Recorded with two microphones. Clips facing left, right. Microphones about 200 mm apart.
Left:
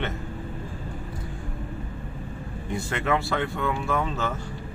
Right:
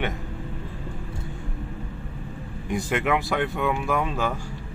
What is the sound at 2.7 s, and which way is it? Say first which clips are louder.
Speech: right 2 dB; 15° right (ahead or behind).